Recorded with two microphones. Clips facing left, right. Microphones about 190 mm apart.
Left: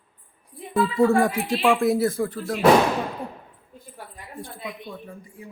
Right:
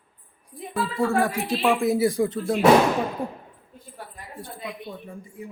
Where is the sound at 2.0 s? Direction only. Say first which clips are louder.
Right 2 dB; 15° right (ahead or behind).